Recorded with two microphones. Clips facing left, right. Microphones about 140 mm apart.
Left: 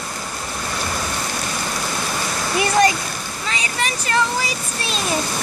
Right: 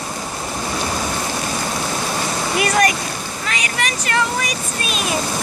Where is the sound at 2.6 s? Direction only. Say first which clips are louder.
Left 1 dB; 30° left (ahead or behind).